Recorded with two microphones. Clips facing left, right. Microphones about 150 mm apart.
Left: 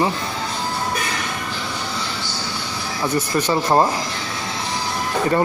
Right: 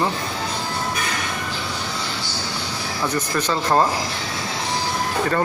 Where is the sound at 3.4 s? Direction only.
10° left (ahead or behind).